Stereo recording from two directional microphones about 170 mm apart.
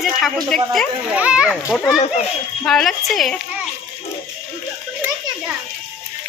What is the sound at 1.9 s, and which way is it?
Speech, 40° left (ahead or behind).